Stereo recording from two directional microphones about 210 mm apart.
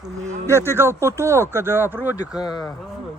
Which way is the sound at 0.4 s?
10° right (ahead or behind).